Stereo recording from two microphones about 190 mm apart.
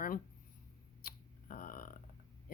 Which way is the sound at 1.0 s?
50° left (ahead or behind).